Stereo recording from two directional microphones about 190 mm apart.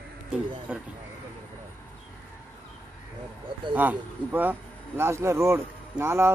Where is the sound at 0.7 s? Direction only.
5° right (ahead or behind).